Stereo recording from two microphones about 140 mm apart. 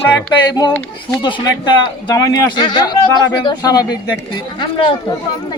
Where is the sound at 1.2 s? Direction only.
30° left (ahead or behind).